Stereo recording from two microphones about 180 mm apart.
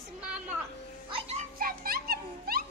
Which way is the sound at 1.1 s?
35° right (ahead or behind).